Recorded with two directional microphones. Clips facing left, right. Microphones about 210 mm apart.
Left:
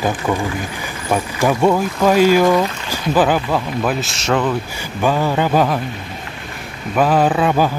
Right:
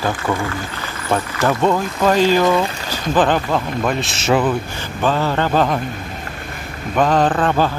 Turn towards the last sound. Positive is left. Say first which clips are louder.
# left 1 dB
turn(degrees=10)  # may be behind; listen again after turning